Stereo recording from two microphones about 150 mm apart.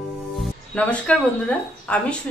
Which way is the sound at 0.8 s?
10° left (ahead or behind).